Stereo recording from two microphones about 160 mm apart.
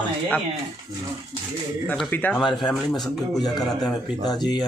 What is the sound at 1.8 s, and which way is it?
Speech, 5° left (ahead or behind).